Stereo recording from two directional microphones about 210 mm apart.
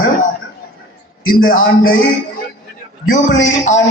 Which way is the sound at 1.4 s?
40° left (ahead or behind).